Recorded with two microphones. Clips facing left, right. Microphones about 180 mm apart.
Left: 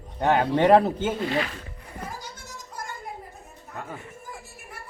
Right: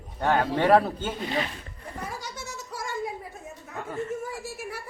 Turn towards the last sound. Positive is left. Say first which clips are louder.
# right 7 dB
turn(degrees=-85)